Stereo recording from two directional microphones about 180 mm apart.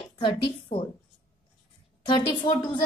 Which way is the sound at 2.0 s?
25° left (ahead or behind).